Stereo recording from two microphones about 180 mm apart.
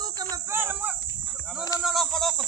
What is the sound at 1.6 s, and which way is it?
Speech, 20° left (ahead or behind).